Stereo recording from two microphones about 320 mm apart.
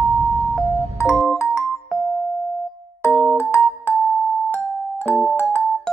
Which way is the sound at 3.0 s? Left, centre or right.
Centre.